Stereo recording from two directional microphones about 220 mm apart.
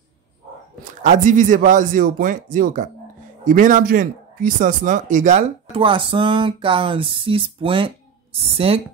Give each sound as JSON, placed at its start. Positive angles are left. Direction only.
{"t": 1.0, "sound": "speech", "side_deg": -35}